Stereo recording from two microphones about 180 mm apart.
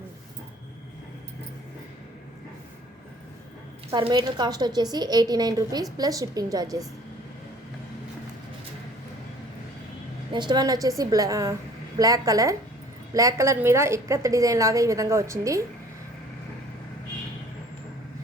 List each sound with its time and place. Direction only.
3.9 s a woman's voice: 30° right (ahead or behind)
10.3 s a woman's voice: 25° right (ahead or behind)